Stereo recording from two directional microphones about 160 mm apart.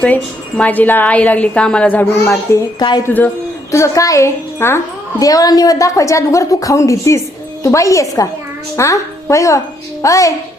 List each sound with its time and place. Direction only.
0.0 s a woman's voice: 10° left (ahead or behind)